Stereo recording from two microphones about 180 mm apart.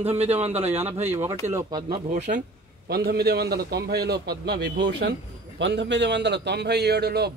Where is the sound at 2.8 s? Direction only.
60° right (ahead or behind).